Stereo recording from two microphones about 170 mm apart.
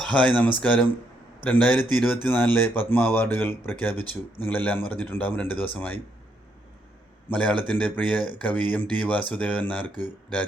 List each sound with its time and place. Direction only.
0.0 s a man's voice: 10° left (ahead or behind)
7.3 s a man's voice: 10° left (ahead or behind)
9.9 s speech: 25° right (ahead or behind)